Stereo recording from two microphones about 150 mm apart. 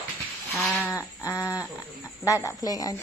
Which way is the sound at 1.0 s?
20° left (ahead or behind).